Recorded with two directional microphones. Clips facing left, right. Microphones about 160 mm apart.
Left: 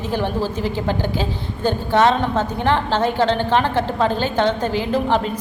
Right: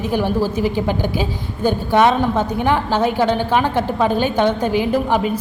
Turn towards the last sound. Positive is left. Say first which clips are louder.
# right 2 dB
turn(degrees=-10)  # may be behind; listen again after turning